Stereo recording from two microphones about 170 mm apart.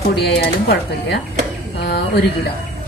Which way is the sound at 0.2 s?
70° left (ahead or behind).